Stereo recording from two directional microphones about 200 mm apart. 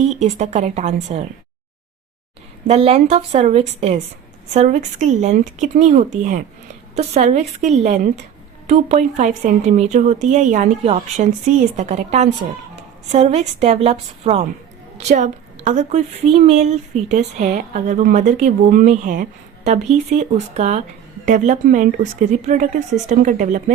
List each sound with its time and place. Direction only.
0.2 s a woman's voice: 35° right (ahead or behind)
2.6 s a woman's voice: 30° right (ahead or behind)